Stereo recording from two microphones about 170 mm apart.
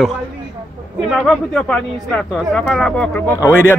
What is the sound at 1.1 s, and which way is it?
Speech, centre (ahead or behind).